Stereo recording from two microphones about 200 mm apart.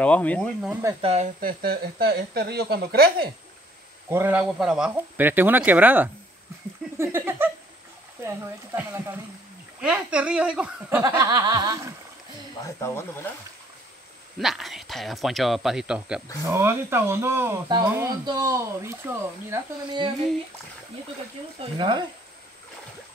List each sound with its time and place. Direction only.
0.0 s speech: 5° left (ahead or behind)
1.0 s speech: 30° right (ahead or behind)
1.4 s speech: 50° right (ahead or behind)
4.1 s speech: 10° right (ahead or behind)
8.7 s speech: 15° right (ahead or behind)
12.6 s speech: 15° left (ahead or behind)
14.4 s speech: centre (ahead or behind); by 20.1 s 15° right (ahead or behind)
21.5 s speech: 25° right (ahead or behind)